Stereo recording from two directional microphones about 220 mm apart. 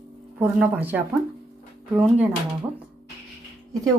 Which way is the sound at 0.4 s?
5° right (ahead or behind).